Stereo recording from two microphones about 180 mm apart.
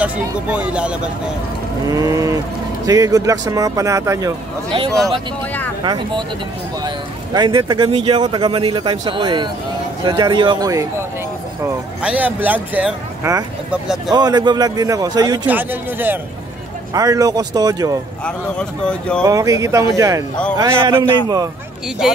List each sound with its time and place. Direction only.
0.0 s speech: 5° right (ahead or behind)
1.9 s speech: 20° right (ahead or behind)
5.9 s speech: 25° right (ahead or behind)
7.3 s speech: 25° right (ahead or behind)
11.6 s speech: 5° right (ahead or behind)
14.1 s speech: 20° right (ahead or behind)
15.4 s speech: 10° right (ahead or behind)
18.2 s speech: 5° left (ahead or behind)
19.2 s speech: 20° right (ahead or behind)